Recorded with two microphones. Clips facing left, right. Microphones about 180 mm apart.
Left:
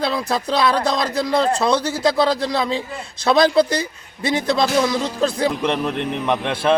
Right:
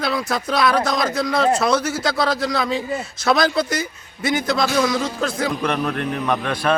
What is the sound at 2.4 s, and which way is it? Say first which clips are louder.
Speech: left 1 dB; 25° left (ahead or behind).